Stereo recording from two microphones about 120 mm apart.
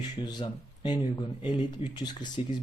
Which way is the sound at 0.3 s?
40° left (ahead or behind).